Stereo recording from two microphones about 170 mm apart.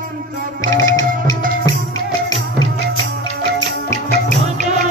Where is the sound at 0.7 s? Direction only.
20° left (ahead or behind).